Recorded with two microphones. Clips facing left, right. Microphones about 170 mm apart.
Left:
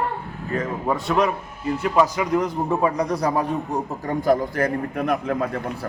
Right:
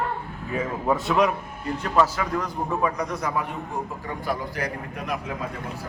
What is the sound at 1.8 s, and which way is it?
A man's voice, 10° left (ahead or behind).